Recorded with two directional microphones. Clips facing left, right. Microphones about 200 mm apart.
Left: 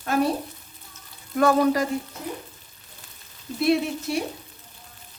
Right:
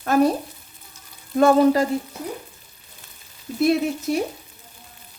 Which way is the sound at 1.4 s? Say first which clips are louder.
Right 4 dB; 25° right (ahead or behind).